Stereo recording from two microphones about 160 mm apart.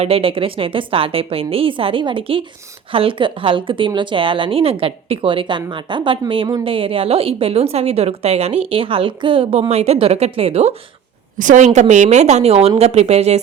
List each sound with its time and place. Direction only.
0.0 s a woman's voice: 35° right (ahead or behind)
11.3 s speech: 50° right (ahead or behind)